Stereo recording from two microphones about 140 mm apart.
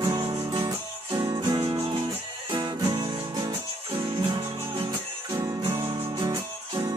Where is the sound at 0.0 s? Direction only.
25° right (ahead or behind).